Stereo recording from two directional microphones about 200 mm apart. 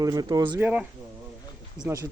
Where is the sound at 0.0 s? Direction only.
20° right (ahead or behind).